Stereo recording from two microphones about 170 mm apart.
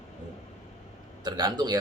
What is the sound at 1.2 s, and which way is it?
Speech, 25° right (ahead or behind).